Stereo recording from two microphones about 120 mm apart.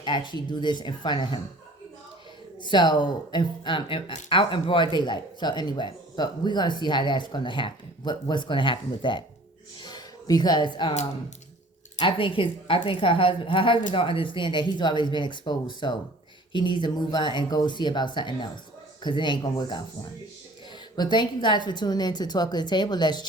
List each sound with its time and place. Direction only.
0.0 s speech: 40° left (ahead or behind)
2.6 s speech: 40° left (ahead or behind)
11.9 s a woman's voice: 45° left (ahead or behind)
20.9 s speech: 35° left (ahead or behind)